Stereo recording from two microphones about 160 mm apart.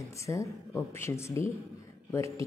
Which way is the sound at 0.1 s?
20° left (ahead or behind).